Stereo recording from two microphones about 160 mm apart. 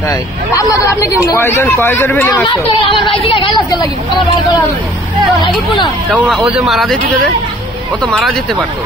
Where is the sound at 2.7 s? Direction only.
30° left (ahead or behind).